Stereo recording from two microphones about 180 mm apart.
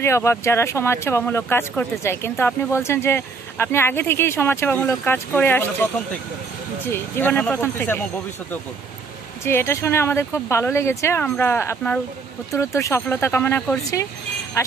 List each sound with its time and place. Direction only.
0.0 s speech: 15° left (ahead or behind)
6.9 s speech: 10° left (ahead or behind)